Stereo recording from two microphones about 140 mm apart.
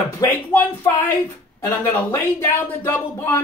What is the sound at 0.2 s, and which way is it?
Speech, 15° left (ahead or behind).